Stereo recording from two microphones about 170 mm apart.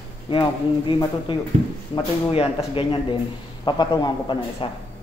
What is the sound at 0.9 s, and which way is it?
A man's voice, 30° left (ahead or behind).